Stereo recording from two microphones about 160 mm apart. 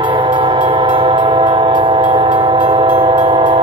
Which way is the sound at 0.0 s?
30° right (ahead or behind).